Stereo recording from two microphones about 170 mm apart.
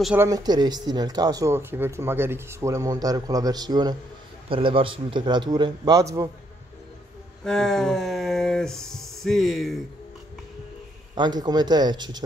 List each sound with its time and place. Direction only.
0.0 s speech: 10° right (ahead or behind)
0.3 s speech: 25° right (ahead or behind)
7.4 s speech: 5° left (ahead or behind)
11.1 s speech: 25° right (ahead or behind)